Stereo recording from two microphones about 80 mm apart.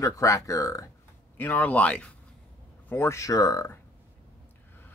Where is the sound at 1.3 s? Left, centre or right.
Left.